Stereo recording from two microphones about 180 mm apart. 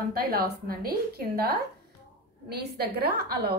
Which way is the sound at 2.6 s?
65° right (ahead or behind).